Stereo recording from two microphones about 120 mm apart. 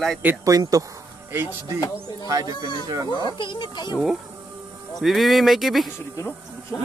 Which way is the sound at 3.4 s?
40° left (ahead or behind).